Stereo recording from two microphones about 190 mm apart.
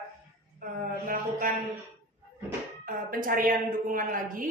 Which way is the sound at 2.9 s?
45° right (ahead or behind).